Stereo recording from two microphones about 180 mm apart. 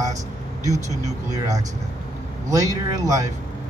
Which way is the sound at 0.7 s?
40° right (ahead or behind).